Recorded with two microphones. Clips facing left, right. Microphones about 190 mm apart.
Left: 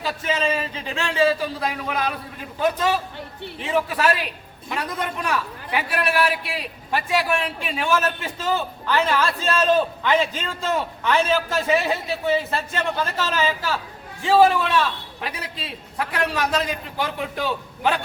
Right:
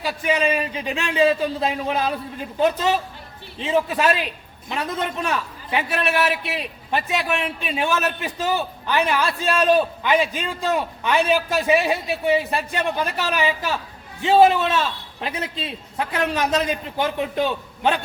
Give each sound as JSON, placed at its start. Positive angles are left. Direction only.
{"t": 0.0, "sound": "a man's voice", "side_deg": -15}